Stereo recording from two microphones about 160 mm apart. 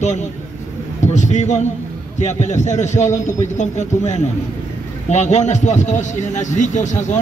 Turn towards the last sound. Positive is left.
turn(degrees=50)  # may be behind; listen again after turning